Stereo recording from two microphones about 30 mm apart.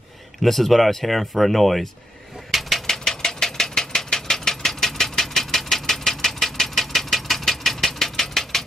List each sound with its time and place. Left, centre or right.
0.4 s speech: centre
2.5 s a sound: centre
2.9 s engine: centre